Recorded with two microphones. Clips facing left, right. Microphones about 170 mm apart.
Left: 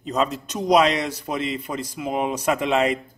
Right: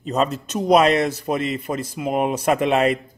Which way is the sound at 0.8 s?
55° right (ahead or behind).